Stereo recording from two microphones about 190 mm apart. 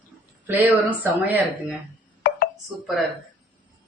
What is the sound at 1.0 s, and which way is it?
Speech, 10° right (ahead or behind).